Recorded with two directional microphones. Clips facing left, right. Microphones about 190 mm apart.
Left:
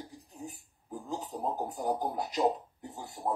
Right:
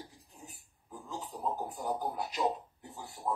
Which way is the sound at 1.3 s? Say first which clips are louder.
Left 1 dB; 40° left (ahead or behind).